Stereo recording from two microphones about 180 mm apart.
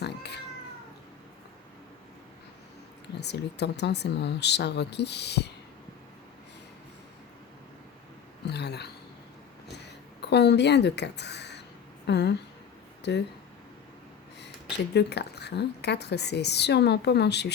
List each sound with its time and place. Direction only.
0.0 s cat: 70° left (ahead or behind)
3.2 s a woman's voice: 70° left (ahead or behind)
8.4 s a sound: 65° left (ahead or behind)
12.0 s a woman's voice: 70° left (ahead or behind)
14.9 s a woman's voice: 65° left (ahead or behind)